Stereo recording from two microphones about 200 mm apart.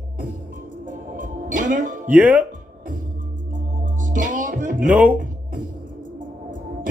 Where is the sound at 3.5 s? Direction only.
40° right (ahead or behind).